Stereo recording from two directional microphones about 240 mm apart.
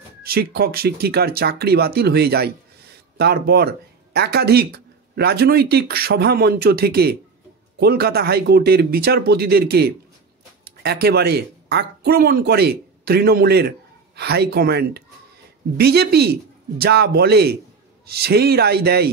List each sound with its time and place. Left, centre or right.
0.2 s speech: right